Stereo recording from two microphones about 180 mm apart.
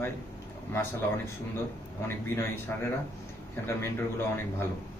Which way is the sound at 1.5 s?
15° left (ahead or behind).